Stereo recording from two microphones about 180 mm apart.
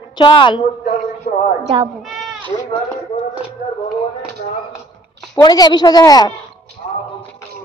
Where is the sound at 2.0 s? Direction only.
Centre (ahead or behind).